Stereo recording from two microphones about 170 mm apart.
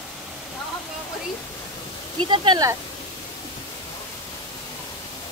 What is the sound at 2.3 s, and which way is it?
Speech, 25° right (ahead or behind).